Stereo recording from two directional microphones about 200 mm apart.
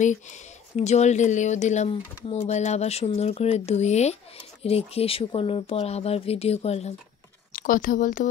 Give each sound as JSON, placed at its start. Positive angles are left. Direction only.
{"t": 0.7, "sound": "speech", "side_deg": 35}
{"t": 7.5, "sound": "speech", "side_deg": 45}